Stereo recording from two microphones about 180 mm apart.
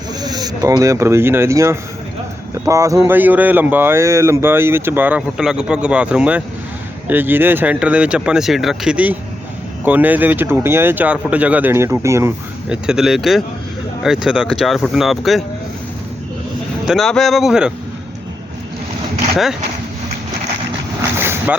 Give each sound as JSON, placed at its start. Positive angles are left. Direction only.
{"t": 0.2, "sound": "speech", "side_deg": -20}
{"t": 16.8, "sound": "speech", "side_deg": 0}
{"t": 21.0, "sound": "boat", "side_deg": -15}